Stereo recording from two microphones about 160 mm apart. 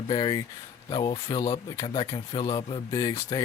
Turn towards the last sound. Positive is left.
turn(degrees=25)  # may be behind; listen again after turning